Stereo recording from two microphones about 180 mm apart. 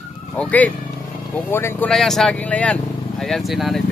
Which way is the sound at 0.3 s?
10° left (ahead or behind).